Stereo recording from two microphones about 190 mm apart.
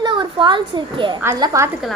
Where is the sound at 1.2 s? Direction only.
15° right (ahead or behind).